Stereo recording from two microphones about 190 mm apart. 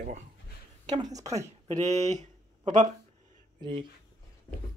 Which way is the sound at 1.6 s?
35° right (ahead or behind).